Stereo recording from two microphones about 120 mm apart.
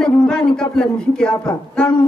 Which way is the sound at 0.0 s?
5° left (ahead or behind).